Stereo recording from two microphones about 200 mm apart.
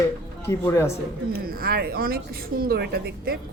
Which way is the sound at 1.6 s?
50° right (ahead or behind).